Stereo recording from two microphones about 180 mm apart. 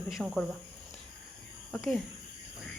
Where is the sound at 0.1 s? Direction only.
Centre (ahead or behind).